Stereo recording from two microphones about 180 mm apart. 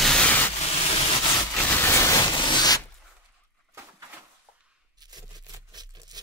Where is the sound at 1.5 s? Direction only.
10° left (ahead or behind).